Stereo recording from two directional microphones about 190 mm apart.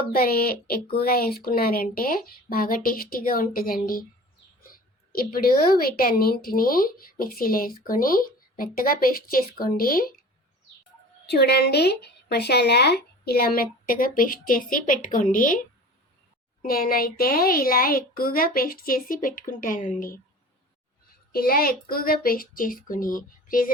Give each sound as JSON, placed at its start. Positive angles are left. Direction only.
{"t": 0.1, "sound": "a woman's voice", "side_deg": 55}
{"t": 5.1, "sound": "a woman's voice", "side_deg": 50}
{"t": 11.3, "sound": "a woman's voice", "side_deg": 60}
{"t": 16.6, "sound": "a woman's voice", "side_deg": 50}
{"t": 21.3, "sound": "a woman's voice", "side_deg": 50}